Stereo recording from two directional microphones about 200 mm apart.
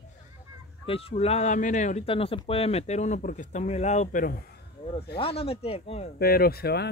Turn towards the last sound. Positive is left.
turn(degrees=50)  # may be behind; listen again after turning